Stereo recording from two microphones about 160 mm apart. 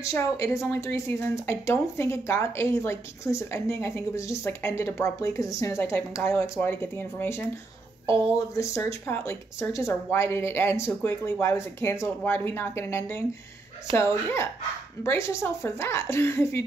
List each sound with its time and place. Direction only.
0.0 s a woman's voice: 20° left (ahead or behind)
8.5 s a woman's voice: 15° left (ahead or behind)